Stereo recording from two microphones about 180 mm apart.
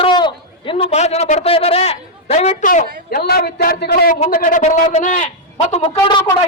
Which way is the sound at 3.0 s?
60° left (ahead or behind).